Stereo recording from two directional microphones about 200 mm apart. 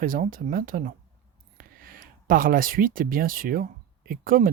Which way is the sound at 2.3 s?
45° right (ahead or behind).